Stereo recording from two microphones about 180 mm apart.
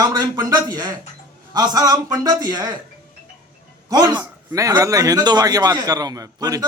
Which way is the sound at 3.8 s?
25° right (ahead or behind).